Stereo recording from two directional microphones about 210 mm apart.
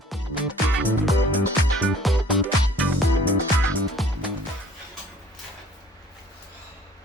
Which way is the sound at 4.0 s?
Centre (ahead or behind).